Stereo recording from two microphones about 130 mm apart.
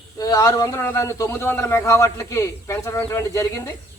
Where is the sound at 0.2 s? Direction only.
30° left (ahead or behind).